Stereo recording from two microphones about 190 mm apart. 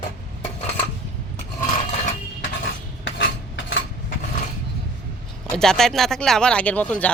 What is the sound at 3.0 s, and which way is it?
Cutlery, 75° left (ahead or behind).